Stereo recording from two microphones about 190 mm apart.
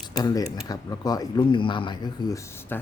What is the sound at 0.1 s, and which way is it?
Speech, 20° left (ahead or behind).